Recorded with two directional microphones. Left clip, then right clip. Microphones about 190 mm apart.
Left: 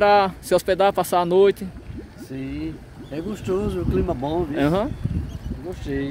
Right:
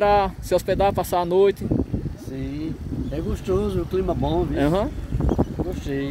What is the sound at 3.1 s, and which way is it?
Speech, 5° right (ahead or behind).